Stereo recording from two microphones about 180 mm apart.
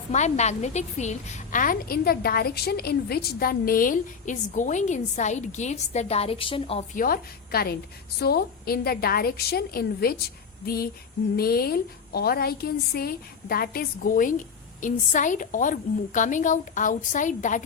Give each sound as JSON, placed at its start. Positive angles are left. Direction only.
{"t": 0.1, "sound": "a woman's voice", "side_deg": 40}
{"t": 6.9, "sound": "a woman's voice", "side_deg": 50}